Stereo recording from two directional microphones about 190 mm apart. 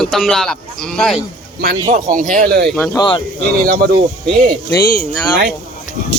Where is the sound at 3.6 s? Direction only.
50° right (ahead or behind).